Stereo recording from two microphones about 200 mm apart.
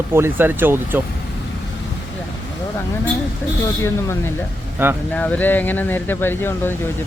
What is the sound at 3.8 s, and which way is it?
Speech, 15° left (ahead or behind).